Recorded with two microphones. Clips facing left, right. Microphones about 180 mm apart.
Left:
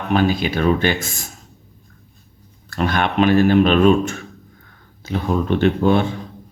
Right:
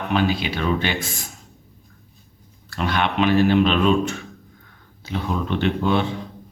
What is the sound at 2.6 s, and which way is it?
Speech, 45° left (ahead or behind).